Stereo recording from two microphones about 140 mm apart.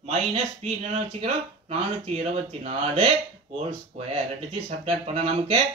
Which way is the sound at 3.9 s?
50° right (ahead or behind).